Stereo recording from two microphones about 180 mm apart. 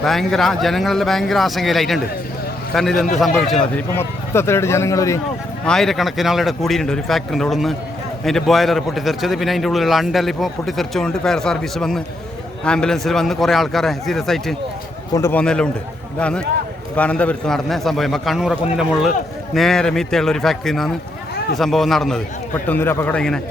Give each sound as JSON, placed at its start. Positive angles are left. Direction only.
{"t": 0.0, "sound": "a man's voice", "side_deg": 0}
{"t": 3.8, "sound": "speech", "side_deg": 15}
{"t": 5.6, "sound": "a man's voice", "side_deg": 0}
{"t": 15.1, "sound": "a man's voice", "side_deg": 15}